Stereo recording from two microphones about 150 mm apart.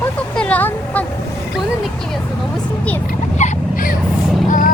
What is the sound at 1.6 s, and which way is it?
Vehicle, centre (ahead or behind).